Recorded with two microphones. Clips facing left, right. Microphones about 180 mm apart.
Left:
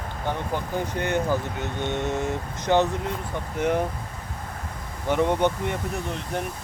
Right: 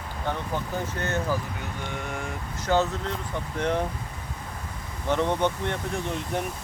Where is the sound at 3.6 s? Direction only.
10° left (ahead or behind).